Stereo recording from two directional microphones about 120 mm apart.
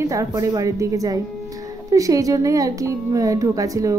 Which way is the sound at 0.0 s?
25° right (ahead or behind).